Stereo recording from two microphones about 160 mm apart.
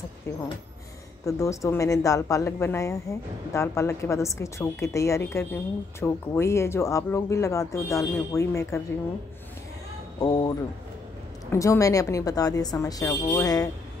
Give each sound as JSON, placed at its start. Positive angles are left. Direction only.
{"t": 1.2, "sound": "a woman's voice", "side_deg": 20}
{"t": 10.2, "sound": "a woman's voice", "side_deg": 25}
{"t": 11.5, "sound": "a woman's voice", "side_deg": 20}